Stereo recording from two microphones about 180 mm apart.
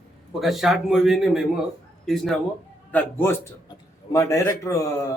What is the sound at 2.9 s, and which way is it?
Speech, 15° left (ahead or behind).